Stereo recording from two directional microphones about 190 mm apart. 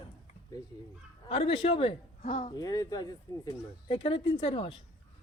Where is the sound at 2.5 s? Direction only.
20° left (ahead or behind).